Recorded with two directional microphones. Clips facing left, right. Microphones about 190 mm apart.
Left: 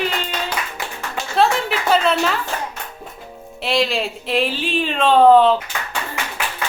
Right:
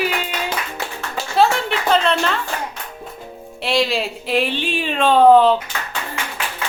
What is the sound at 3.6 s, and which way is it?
Speech, centre (ahead or behind).